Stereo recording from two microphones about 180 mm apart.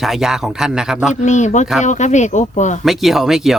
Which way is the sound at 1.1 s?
40° left (ahead or behind).